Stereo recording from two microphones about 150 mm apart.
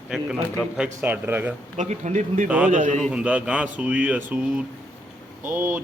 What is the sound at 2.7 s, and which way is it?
Speech, 55° right (ahead or behind).